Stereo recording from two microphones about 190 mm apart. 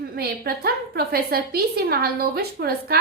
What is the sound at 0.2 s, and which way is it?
A woman's voice, 55° right (ahead or behind).